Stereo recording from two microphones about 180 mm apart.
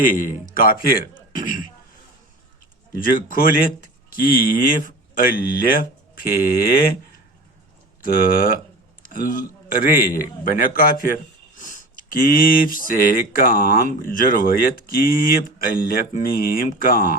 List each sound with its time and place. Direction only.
0.0 s speech: 50° left (ahead or behind)
3.0 s speech: 50° left (ahead or behind)
8.0 s speech: 50° left (ahead or behind)